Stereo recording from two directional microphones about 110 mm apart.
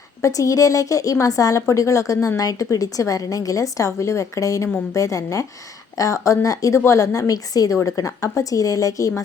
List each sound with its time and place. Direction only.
0.2 s a woman's voice: 30° left (ahead or behind)